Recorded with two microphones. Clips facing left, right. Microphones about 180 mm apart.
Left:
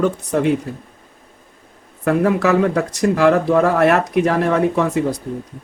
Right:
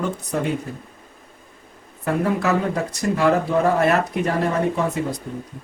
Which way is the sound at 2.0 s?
85° left.